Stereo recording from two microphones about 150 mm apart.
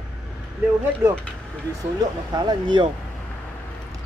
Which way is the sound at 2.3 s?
30° right (ahead or behind).